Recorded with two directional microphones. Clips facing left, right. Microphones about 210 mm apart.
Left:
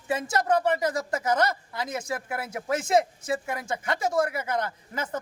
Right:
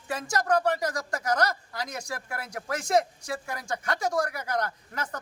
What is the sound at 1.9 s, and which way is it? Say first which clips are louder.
Speech: left 5 dB; 5° left (ahead or behind).